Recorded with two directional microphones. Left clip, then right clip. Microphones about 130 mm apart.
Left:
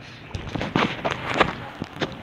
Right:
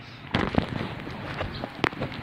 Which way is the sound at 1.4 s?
25° left (ahead or behind).